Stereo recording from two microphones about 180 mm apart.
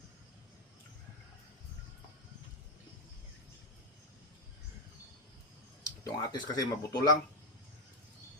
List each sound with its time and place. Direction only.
5.8 s speech: 20° left (ahead or behind)